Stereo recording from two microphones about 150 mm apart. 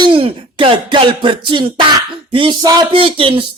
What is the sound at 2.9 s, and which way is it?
Speech, 35° right (ahead or behind).